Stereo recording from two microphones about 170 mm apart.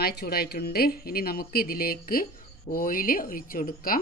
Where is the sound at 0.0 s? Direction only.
65° left (ahead or behind).